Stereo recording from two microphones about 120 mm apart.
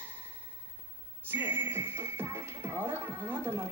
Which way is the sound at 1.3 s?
15° right (ahead or behind).